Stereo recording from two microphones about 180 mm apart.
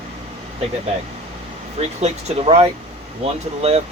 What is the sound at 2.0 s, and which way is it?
Speech, 35° right (ahead or behind).